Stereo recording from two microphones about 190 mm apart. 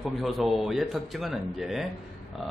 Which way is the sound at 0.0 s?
Centre (ahead or behind).